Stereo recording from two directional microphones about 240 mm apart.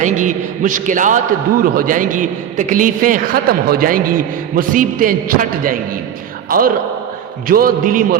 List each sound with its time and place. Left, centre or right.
0.0 s a man's voice: right